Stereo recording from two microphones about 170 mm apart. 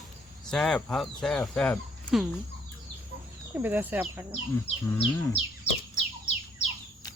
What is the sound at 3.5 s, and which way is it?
Speech, 10° right (ahead or behind).